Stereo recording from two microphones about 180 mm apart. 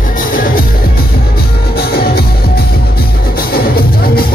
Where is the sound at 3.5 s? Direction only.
55° left (ahead or behind).